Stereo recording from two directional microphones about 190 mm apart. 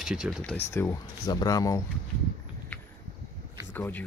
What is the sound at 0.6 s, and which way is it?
Speech, 15° left (ahead or behind).